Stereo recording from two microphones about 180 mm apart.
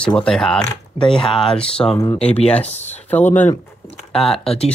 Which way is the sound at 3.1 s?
10° left (ahead or behind).